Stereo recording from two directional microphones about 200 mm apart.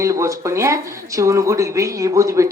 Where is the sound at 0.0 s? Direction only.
15° right (ahead or behind).